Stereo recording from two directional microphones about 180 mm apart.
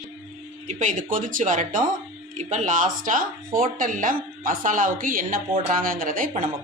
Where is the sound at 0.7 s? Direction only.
45° right (ahead or behind).